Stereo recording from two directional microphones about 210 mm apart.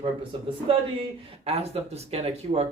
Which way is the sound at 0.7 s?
25° right (ahead or behind).